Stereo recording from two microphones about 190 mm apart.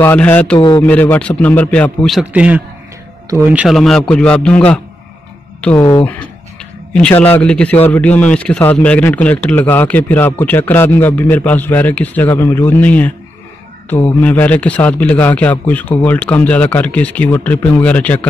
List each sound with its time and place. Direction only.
0.0 s a man's voice: 10° left (ahead or behind)
0.6 s speech: 25° left (ahead or behind)
0.8 s a man's voice: 10° left (ahead or behind)
14.2 s a man's voice: 10° left (ahead or behind)